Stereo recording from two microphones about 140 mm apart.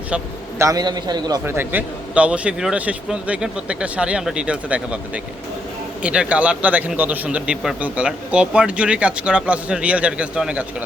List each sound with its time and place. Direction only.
0.6 s a man's voice: 25° right (ahead or behind)
1.5 s a man's voice: 15° right (ahead or behind)